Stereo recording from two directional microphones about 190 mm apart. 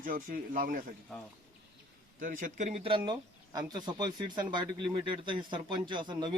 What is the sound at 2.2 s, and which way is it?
Speech, 45° right (ahead or behind).